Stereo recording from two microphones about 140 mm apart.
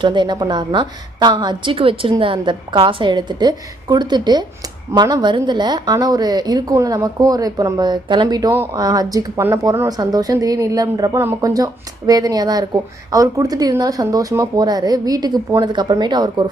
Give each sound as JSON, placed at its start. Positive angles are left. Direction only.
{"t": 0.0, "sound": "a woman's voice", "side_deg": -35}
{"t": 8.4, "sound": "speech", "side_deg": -15}
{"t": 8.8, "sound": "a woman's voice", "side_deg": -25}